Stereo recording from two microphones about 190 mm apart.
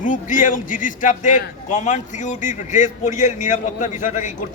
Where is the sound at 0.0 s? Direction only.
45° left (ahead or behind).